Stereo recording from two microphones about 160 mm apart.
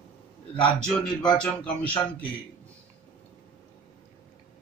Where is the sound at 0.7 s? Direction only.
5° left (ahead or behind).